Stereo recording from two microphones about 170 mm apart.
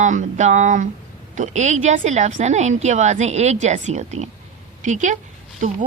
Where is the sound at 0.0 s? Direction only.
45° right (ahead or behind).